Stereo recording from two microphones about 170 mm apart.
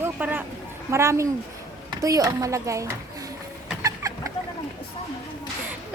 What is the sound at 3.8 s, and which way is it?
Chicken, 20° right (ahead or behind).